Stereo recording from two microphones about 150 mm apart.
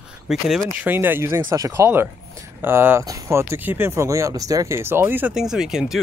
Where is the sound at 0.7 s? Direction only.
15° right (ahead or behind).